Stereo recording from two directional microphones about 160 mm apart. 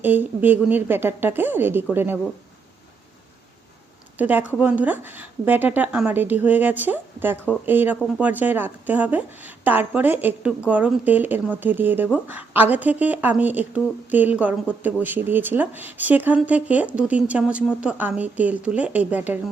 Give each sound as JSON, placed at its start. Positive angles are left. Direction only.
{"t": 0.0, "sound": "speech", "side_deg": -10}
{"t": 4.2, "sound": "speech", "side_deg": -10}